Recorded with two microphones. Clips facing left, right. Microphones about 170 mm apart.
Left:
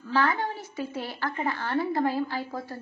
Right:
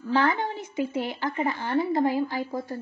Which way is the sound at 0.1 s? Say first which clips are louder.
Right 2 dB; 20° right (ahead or behind).